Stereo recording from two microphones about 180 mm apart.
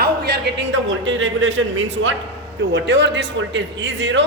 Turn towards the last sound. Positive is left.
turn(degrees=-85)